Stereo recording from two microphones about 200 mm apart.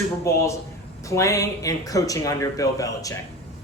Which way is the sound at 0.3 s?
15° left (ahead or behind).